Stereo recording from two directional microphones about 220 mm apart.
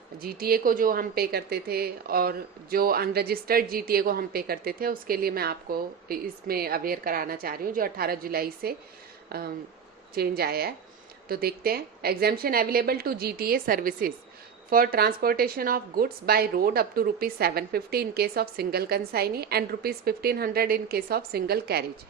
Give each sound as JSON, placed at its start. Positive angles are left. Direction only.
{"t": 0.2, "sound": "speech", "side_deg": -45}